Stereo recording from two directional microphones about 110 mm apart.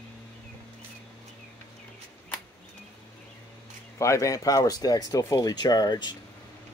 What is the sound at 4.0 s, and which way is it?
Speech, 30° left (ahead or behind).